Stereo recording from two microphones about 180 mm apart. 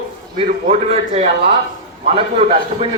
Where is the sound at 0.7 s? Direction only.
35° right (ahead or behind).